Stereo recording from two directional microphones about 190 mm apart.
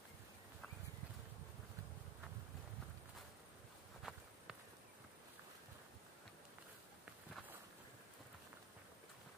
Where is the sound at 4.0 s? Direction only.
Centre (ahead or behind).